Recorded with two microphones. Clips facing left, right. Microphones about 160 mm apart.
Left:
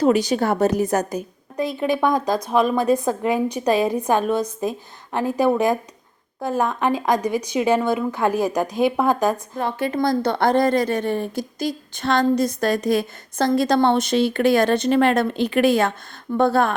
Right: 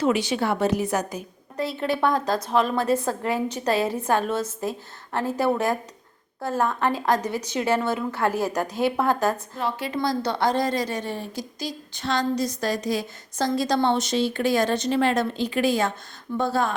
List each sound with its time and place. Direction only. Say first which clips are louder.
0.0 s a woman's voice: left 5 dB; 40° left (ahead or behind)
1.5 s a woman's voice: left 4 dB; 15° left (ahead or behind)
9.6 s a woman's voice: left 4 dB; 50° left (ahead or behind)